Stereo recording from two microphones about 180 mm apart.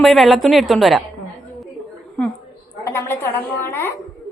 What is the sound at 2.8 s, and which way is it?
A woman's voice, 15° left (ahead or behind).